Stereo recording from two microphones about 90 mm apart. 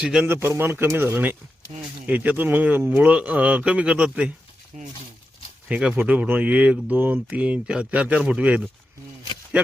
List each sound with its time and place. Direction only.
0.0 s speech: 10° right (ahead or behind)
0.3 s a man's voice: 25° right (ahead or behind); by 4.3 s 10° right (ahead or behind)
5.6 s speech: 15° right (ahead or behind)